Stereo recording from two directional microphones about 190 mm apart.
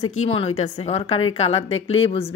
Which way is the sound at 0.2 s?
35° left (ahead or behind).